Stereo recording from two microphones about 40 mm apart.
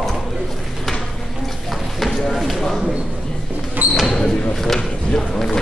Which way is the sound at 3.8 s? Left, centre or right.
Right.